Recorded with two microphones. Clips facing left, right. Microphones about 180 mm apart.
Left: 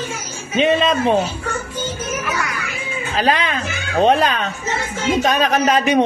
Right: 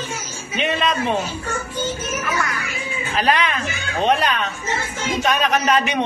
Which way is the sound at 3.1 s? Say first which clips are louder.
Left 1 dB; 30° left (ahead or behind).